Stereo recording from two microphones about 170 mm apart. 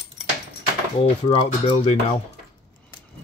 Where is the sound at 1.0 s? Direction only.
35° left (ahead or behind).